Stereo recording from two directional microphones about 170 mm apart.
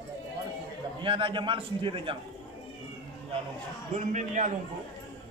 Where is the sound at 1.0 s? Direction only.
30° right (ahead or behind).